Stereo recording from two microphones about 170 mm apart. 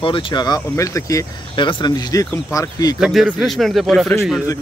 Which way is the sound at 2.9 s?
5° right (ahead or behind).